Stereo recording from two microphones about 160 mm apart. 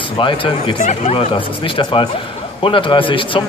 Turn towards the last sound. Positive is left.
turn(degrees=30)  # may be behind; listen again after turning